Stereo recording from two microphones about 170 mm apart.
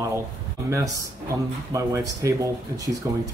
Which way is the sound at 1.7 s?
20° right (ahead or behind).